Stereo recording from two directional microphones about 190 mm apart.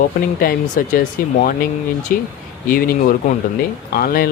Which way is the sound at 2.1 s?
50° left (ahead or behind).